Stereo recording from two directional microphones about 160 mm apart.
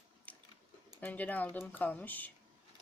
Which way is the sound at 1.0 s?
10° left (ahead or behind).